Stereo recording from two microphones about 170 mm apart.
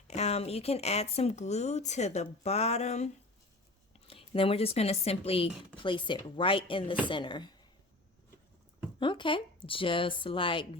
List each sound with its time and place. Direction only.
0.1 s speech: 40° left (ahead or behind)
4.1 s speech: 35° left (ahead or behind)
9.0 s speech: 30° left (ahead or behind)